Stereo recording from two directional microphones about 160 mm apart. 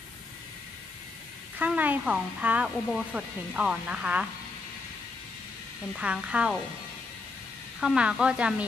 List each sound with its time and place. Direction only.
1.6 s speech: 10° right (ahead or behind)
5.9 s speech: 5° right (ahead or behind)
7.8 s speech: 5° right (ahead or behind)